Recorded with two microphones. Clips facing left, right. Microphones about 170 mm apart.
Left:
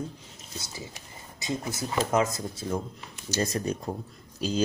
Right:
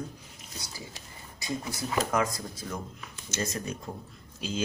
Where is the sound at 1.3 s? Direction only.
20° left (ahead or behind); by 4.6 s 40° left (ahead or behind).